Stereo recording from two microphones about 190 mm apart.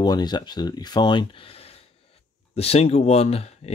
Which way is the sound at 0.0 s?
20° left (ahead or behind).